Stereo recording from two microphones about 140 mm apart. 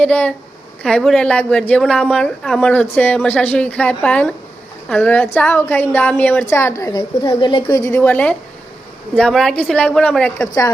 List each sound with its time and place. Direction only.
0.0 s a woman's voice: 10° left (ahead or behind)
6.9 s a woman's voice: 35° left (ahead or behind); by 10.3 s 10° left (ahead or behind)
10.3 s a woman's voice: 25° left (ahead or behind)